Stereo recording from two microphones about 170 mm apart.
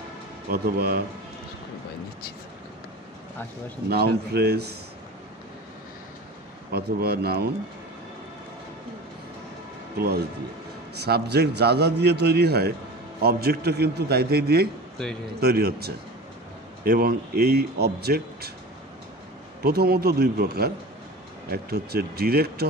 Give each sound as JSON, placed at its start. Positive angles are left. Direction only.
{"t": 0.5, "sound": "speech", "side_deg": -65}
{"t": 3.9, "sound": "a man's voice", "side_deg": -70}
{"t": 6.7, "sound": "a man's voice", "side_deg": -65}
{"t": 9.9, "sound": "a man's voice", "side_deg": -70}
{"t": 19.6, "sound": "speech", "side_deg": -65}